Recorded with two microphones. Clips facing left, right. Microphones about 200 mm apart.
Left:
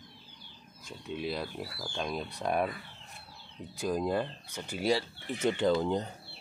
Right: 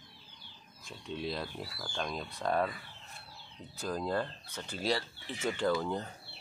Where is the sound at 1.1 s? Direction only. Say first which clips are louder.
Left 2 dB; 10° left (ahead or behind).